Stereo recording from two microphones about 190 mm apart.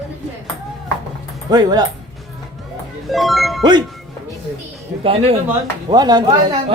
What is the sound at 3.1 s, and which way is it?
Speech, centre (ahead or behind).